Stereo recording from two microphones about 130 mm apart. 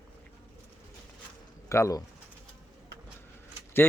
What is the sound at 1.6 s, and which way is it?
Speech, 25° left (ahead or behind).